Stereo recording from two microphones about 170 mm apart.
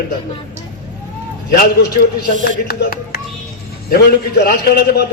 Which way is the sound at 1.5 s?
75° left (ahead or behind).